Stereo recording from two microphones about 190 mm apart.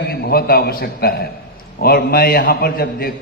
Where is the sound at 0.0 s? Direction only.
55° left (ahead or behind).